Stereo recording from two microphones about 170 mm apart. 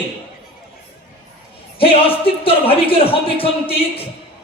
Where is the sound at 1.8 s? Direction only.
35° left (ahead or behind).